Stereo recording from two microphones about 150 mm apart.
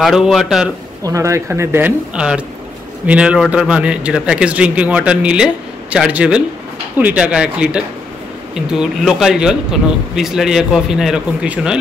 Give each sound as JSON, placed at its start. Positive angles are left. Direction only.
{"t": 0.0, "sound": "speech", "side_deg": 0}
{"t": 1.0, "sound": "a man's voice", "side_deg": -20}